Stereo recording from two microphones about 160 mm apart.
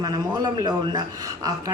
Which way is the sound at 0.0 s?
25° right (ahead or behind).